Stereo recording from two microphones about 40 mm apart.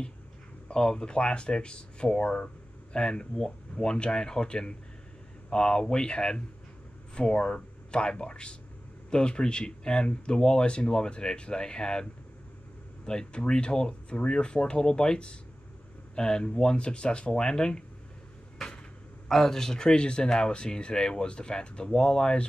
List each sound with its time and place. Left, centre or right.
0.7 s speech: centre
19.2 s speech: centre